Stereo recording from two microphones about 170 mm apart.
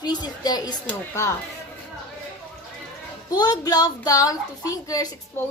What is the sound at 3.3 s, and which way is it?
A woman's voice, 25° left (ahead or behind).